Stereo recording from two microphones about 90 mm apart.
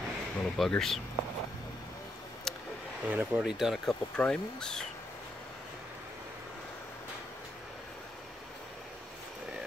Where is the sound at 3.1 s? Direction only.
15° right (ahead or behind).